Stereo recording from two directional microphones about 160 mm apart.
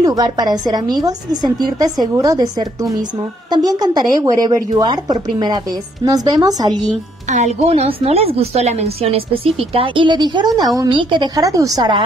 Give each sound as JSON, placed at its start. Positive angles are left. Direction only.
{"t": 0.0, "sound": "a woman's voice", "side_deg": -25}
{"t": 7.2, "sound": "a woman's voice", "side_deg": -45}